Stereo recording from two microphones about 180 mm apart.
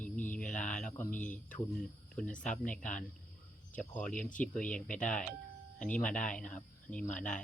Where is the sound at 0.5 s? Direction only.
45° left (ahead or behind).